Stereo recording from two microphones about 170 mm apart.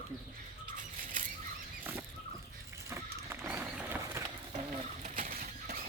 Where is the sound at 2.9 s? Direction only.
15° right (ahead or behind).